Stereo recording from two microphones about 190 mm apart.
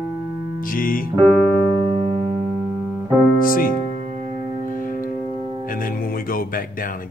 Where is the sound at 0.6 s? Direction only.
50° left (ahead or behind).